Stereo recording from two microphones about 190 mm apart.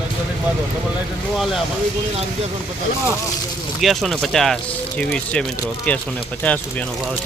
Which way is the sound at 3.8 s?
Centre (ahead or behind).